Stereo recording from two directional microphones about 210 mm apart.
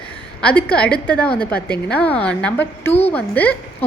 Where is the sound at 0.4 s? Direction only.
5° left (ahead or behind).